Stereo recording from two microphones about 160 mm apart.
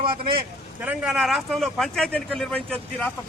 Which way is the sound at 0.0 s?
35° right (ahead or behind).